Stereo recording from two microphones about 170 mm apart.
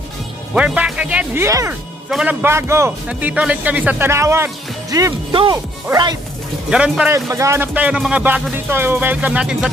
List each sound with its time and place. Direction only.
0.6 s speech: 5° right (ahead or behind)
2.0 s a man's voice: 5° right (ahead or behind)
2.4 s speech: 15° right (ahead or behind)
6.7 s a man's voice: 5° right (ahead or behind)
7.2 s speech: 15° right (ahead or behind)